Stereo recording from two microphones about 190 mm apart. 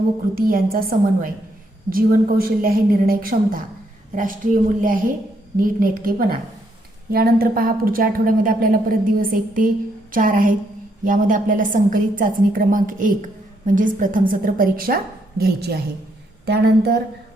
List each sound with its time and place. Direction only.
0.3 s a woman's voice: 50° right (ahead or behind)